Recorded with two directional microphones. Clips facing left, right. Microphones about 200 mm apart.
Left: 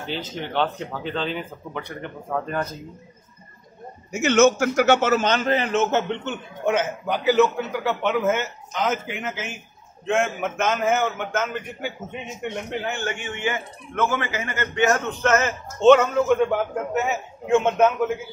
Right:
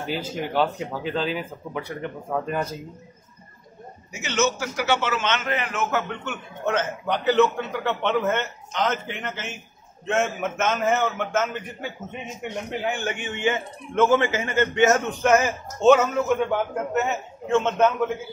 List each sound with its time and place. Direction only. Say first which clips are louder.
0.0 s speech: right 2 dB; 10° right (ahead or behind)
4.1 s a man's voice: left 8 dB; 50° left (ahead or behind); by 12.3 s centre (ahead or behind)
12.8 s a man's voice: right 1 dB; 15° right (ahead or behind); by 18.1 s 10° left (ahead or behind)